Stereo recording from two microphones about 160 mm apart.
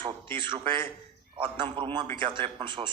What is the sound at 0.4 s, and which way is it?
A man's voice, 30° right (ahead or behind).